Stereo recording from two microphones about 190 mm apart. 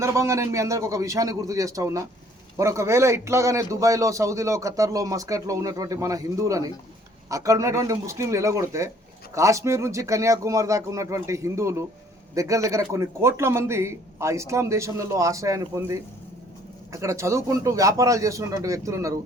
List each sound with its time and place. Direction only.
0.0 s a man's voice: 15° right (ahead or behind)